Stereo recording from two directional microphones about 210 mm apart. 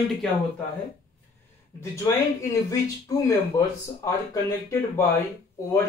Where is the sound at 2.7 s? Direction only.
15° left (ahead or behind).